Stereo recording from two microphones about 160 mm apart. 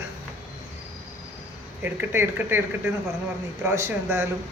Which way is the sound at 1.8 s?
15° right (ahead or behind).